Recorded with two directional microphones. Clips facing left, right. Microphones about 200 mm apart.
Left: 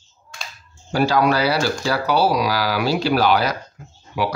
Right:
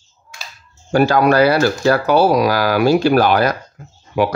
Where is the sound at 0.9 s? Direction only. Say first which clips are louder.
Right 5 dB; 50° right (ahead or behind).